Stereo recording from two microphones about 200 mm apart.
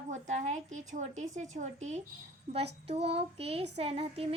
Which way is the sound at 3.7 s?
30° right (ahead or behind).